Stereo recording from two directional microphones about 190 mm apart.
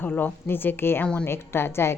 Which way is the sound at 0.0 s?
10° left (ahead or behind).